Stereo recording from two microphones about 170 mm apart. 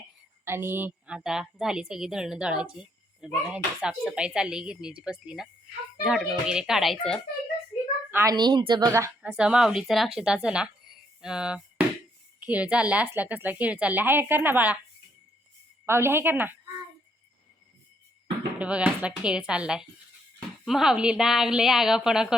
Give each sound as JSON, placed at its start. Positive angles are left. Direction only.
{"t": 0.4, "sound": "a woman's voice", "side_deg": -15}
{"t": 8.1, "sound": "a woman's voice", "side_deg": -20}
{"t": 9.3, "sound": "a woman's voice", "side_deg": -5}
{"t": 15.9, "sound": "a woman's voice", "side_deg": -15}
{"t": 18.6, "sound": "a woman's voice", "side_deg": -5}